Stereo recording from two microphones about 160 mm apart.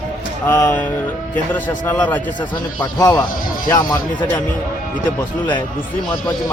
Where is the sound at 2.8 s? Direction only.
25° left (ahead or behind).